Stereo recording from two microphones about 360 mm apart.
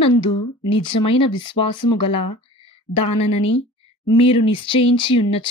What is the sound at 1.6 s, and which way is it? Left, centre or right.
Speech, left.